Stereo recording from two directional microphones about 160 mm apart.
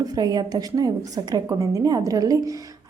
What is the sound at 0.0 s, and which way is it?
A woman's voice, 25° right (ahead or behind).